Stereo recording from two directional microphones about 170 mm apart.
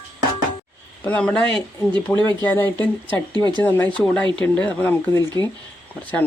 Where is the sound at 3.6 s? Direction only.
10° left (ahead or behind).